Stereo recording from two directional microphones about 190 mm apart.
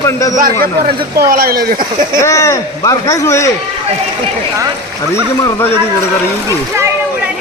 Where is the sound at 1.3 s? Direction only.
50° right (ahead or behind).